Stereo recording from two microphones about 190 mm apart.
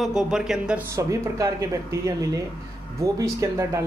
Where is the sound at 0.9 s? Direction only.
15° right (ahead or behind).